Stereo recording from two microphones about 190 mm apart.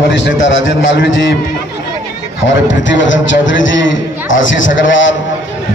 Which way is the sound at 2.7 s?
75° left (ahead or behind).